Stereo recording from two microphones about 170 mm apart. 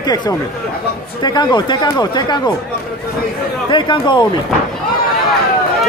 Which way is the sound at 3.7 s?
25° left (ahead or behind).